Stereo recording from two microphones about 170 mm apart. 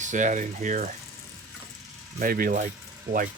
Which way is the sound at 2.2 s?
55° right (ahead or behind).